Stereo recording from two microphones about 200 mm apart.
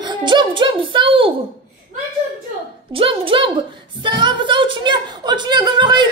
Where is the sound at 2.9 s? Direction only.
25° right (ahead or behind).